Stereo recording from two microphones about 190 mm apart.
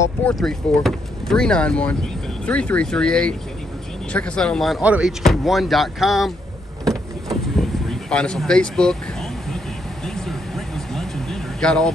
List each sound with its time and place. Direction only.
0.2 s speech: 5° left (ahead or behind)
6.9 s vehicle: centre (ahead or behind)
10.0 s a sound: centre (ahead or behind)